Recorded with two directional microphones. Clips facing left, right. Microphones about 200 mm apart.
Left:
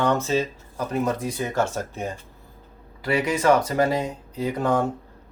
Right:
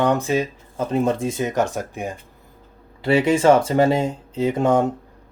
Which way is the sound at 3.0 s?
30° right (ahead or behind).